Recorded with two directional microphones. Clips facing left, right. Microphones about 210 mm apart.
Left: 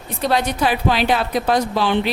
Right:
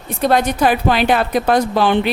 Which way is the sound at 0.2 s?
50° right (ahead or behind).